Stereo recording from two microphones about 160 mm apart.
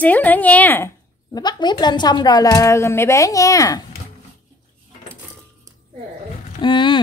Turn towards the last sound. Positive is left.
turn(degrees=30)  # may be behind; listen again after turning